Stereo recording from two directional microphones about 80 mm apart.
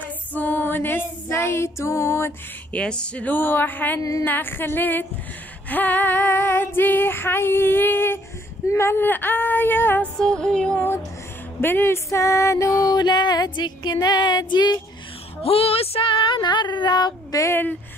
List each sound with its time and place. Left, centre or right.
0.0 s female singing: left
2.7 s female singing: centre
10.1 s music: centre
11.6 s speech: left
12.8 s music: left
16.0 s a sound: left
17.4 s speech: left